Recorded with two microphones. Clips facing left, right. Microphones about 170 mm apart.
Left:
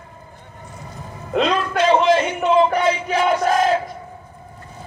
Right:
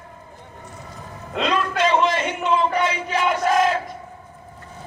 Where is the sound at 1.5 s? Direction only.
35° left (ahead or behind).